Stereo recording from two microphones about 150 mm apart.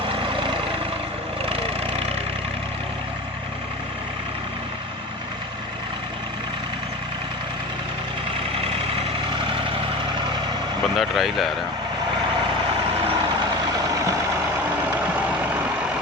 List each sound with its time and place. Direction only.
0.1 s vehicle: 35° right (ahead or behind)
8.5 s vehicle: 40° right (ahead or behind)
10.9 s speech: centre (ahead or behind)